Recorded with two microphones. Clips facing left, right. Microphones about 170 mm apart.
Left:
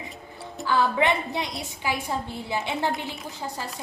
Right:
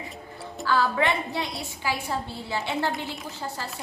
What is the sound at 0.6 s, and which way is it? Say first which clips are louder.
A woman's voice: left 1 dB; 20° left (ahead or behind).